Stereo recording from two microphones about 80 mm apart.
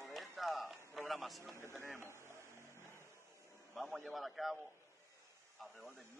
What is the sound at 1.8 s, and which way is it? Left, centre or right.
Speech, right.